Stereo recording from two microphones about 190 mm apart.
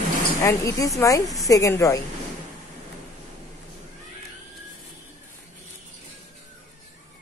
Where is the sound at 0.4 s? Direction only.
15° left (ahead or behind).